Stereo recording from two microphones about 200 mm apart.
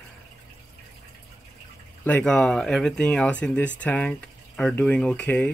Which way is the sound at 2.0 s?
5° left (ahead or behind).